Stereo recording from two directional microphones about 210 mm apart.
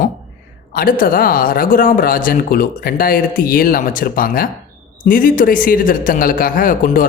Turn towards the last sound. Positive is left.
turn(degrees=40)  # may be behind; listen again after turning